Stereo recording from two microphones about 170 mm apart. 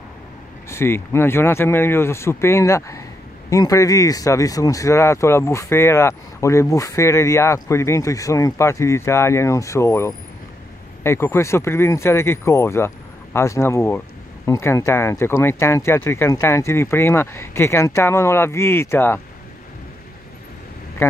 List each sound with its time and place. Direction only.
0.7 s speech: 15° left (ahead or behind)
21.0 s speech: 10° left (ahead or behind)